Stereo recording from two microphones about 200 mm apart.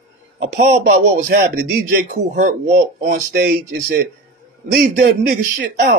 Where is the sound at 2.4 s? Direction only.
45° right (ahead or behind).